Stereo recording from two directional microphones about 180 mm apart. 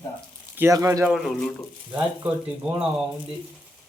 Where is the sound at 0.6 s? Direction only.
15° right (ahead or behind).